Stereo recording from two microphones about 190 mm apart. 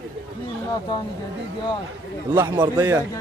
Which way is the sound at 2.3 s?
15° right (ahead or behind).